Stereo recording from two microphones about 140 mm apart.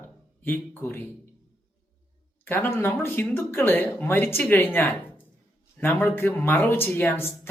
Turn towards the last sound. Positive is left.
turn(degrees=15)  # may be behind; listen again after turning